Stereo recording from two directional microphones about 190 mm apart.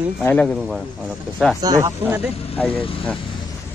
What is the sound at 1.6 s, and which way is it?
Speech, 15° right (ahead or behind).